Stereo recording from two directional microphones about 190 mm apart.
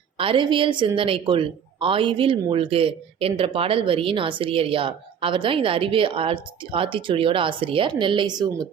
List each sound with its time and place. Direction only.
0.2 s a woman's voice: 25° right (ahead or behind)